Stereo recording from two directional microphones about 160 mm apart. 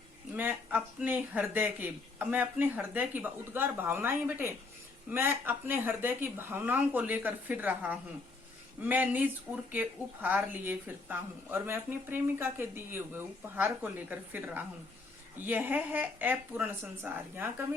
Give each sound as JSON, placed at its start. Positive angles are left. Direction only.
{"t": 0.3, "sound": "speech", "side_deg": -10}